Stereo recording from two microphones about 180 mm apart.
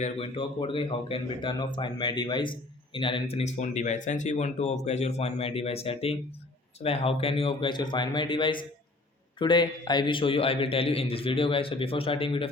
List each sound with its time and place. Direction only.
0.0 s a man's voice: 30° left (ahead or behind)